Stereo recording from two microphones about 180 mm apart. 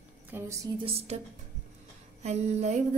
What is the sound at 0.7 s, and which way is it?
Female singing, 30° right (ahead or behind).